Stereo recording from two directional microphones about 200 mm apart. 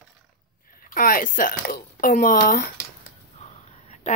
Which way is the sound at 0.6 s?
45° left (ahead or behind).